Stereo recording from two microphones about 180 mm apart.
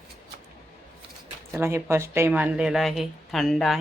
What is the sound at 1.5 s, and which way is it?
Speech, 15° right (ahead or behind).